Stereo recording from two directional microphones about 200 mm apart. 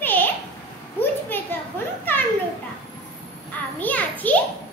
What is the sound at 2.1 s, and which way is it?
Children playing, 10° left (ahead or behind).